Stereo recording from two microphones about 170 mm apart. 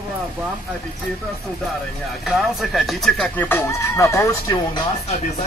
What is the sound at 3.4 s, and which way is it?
Speech, 15° left (ahead or behind).